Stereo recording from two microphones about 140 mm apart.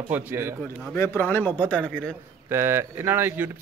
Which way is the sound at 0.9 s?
15° left (ahead or behind).